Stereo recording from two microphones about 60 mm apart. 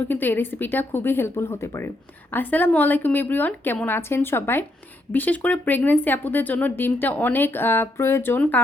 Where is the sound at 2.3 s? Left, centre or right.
Left.